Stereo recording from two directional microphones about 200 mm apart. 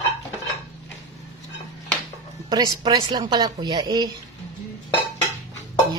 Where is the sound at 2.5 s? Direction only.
20° right (ahead or behind).